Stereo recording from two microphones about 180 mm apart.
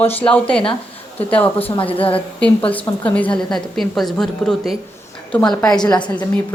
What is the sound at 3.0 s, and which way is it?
A woman's voice, 5° left (ahead or behind).